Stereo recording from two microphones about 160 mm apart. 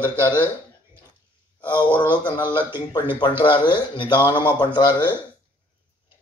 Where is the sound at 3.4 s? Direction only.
30° left (ahead or behind).